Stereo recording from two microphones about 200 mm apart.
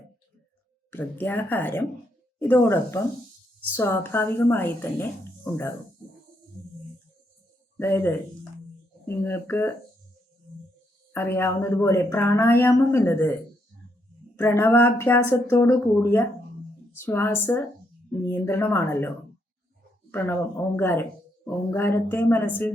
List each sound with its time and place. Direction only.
0.9 s speech: 10° left (ahead or behind)
7.8 s speech: 10° left (ahead or behind)
11.1 s speech: 10° left (ahead or behind)
14.3 s speech: 10° left (ahead or behind)